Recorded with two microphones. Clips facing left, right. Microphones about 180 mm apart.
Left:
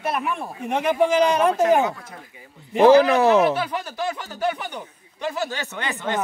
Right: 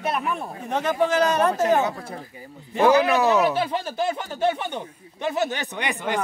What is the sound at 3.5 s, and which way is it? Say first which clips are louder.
Speech: right 2 dB; 30° right (ahead or behind).